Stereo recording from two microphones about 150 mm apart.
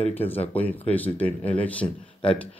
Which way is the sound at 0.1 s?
15° left (ahead or behind).